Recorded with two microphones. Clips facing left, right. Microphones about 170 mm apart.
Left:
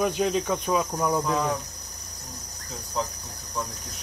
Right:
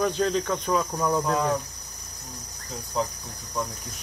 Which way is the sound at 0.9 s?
5° left (ahead or behind).